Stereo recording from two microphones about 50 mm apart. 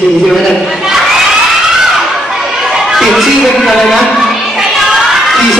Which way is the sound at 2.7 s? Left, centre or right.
Centre.